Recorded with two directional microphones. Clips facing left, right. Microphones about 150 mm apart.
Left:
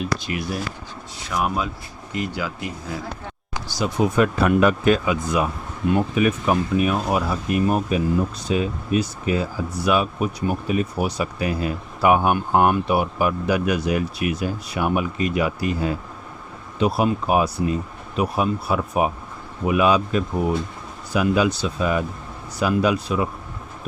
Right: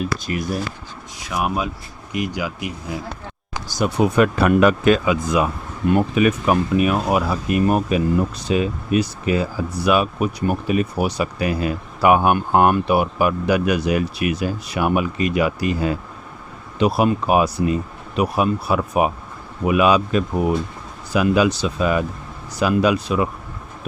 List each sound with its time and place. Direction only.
0.0 s speech: 45° right (ahead or behind)
1.2 s speech: 10° right (ahead or behind)
3.8 s speech: 70° right (ahead or behind); by 5.5 s 90° right
6.1 s speech: 75° right (ahead or behind)